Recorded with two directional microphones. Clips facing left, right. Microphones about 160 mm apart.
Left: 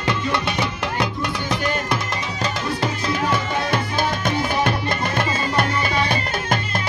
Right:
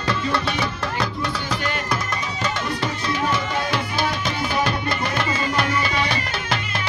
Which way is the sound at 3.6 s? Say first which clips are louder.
Left 2 dB; 50° left (ahead or behind).